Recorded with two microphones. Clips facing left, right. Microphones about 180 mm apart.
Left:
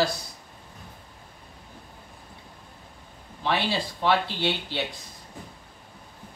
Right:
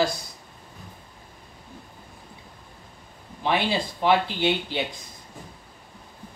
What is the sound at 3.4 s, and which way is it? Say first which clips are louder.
Speech: right 2 dB; 15° right (ahead or behind).